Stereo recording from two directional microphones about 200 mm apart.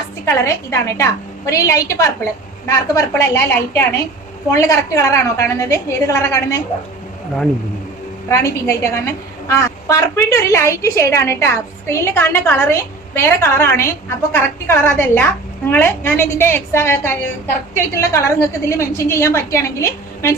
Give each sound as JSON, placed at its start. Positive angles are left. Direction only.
{"t": 0.3, "sound": "a woman's voice", "side_deg": 15}
{"t": 8.3, "sound": "a woman's voice", "side_deg": 15}